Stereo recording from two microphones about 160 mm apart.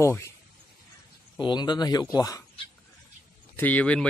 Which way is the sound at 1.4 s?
25° left (ahead or behind).